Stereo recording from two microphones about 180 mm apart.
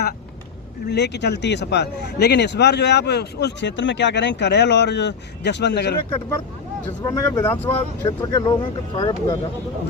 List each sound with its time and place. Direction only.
0.9 s speech: 70° left (ahead or behind)
7.0 s speech: 15° left (ahead or behind)